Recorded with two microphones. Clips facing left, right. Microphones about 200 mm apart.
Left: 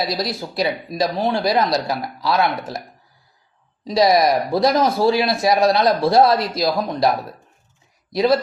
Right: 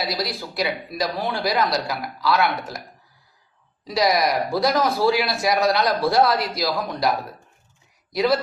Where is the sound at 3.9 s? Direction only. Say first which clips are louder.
Left 5 dB; 25° left (ahead or behind).